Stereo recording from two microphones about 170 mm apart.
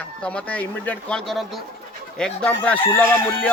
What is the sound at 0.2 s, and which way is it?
Speech, 5° left (ahead or behind).